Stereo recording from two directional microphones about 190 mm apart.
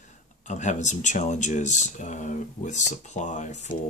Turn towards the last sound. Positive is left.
turn(degrees=40)  # may be behind; listen again after turning